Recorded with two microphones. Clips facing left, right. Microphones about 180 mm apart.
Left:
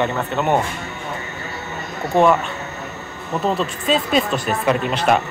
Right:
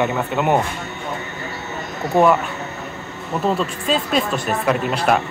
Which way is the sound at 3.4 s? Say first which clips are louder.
Even; centre (ahead or behind).